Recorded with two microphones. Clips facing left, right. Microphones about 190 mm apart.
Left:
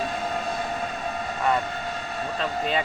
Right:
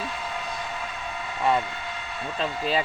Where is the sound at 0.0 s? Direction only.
45° left (ahead or behind).